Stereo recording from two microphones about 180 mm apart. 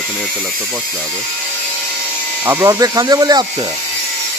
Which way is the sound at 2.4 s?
15° right (ahead or behind).